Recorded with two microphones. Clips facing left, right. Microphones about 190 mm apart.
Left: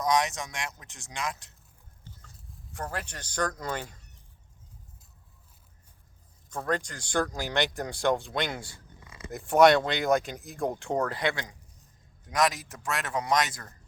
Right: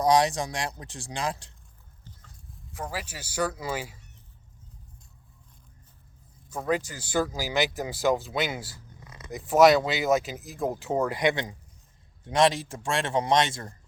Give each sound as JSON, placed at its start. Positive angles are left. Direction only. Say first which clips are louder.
{"t": 0.0, "sound": "speech", "louder": "right 5 dB", "side_deg": -35}
{"t": 2.7, "sound": "speech", "louder": "right 1 dB", "side_deg": -5}
{"t": 6.5, "sound": "a man's voice", "louder": "right 3 dB", "side_deg": -10}